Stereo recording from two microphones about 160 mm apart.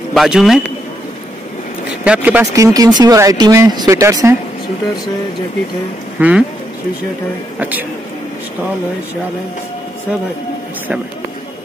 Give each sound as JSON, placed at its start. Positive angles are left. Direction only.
{"t": 0.1, "sound": "a man's voice", "side_deg": 0}
{"t": 2.0, "sound": "speech", "side_deg": -10}
{"t": 2.5, "sound": "speech", "side_deg": -20}
{"t": 6.1, "sound": "speech", "side_deg": -10}
{"t": 7.5, "sound": "a man's voice", "side_deg": -10}